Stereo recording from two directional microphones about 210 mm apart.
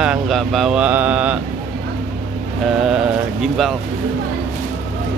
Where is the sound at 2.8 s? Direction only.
5° right (ahead or behind).